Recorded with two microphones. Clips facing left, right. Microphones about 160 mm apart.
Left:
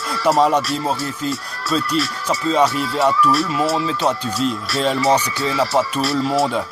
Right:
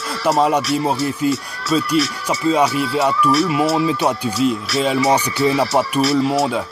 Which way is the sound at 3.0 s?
5° right (ahead or behind).